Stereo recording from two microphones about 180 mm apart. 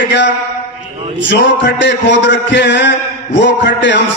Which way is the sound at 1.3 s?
75° left (ahead or behind).